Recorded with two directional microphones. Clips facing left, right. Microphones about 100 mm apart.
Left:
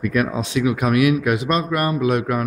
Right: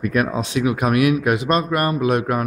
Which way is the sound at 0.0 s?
40° right (ahead or behind).